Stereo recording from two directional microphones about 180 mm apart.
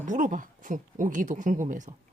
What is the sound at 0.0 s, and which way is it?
Speech, 45° right (ahead or behind).